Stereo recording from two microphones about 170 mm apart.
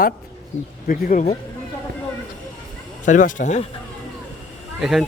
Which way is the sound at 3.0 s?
50° left (ahead or behind).